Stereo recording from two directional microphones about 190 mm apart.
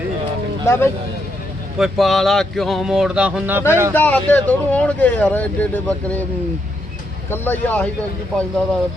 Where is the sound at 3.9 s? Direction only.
10° left (ahead or behind).